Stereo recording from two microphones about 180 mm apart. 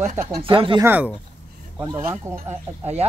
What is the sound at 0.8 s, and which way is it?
Speech, 10° right (ahead or behind).